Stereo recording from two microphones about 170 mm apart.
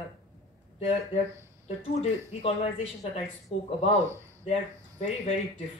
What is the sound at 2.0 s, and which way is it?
Speech, 35° left (ahead or behind).